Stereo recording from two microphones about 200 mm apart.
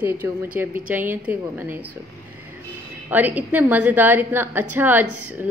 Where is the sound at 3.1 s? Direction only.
10° right (ahead or behind).